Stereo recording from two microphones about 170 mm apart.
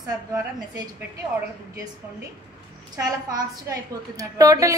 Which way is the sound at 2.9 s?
20° right (ahead or behind).